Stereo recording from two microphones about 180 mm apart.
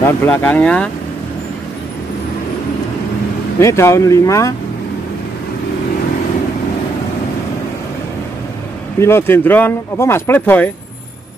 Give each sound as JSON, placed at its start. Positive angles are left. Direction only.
{"t": 0.0, "sound": "speech", "side_deg": 10}
{"t": 3.5, "sound": "speech", "side_deg": 15}
{"t": 9.0, "sound": "speech", "side_deg": 15}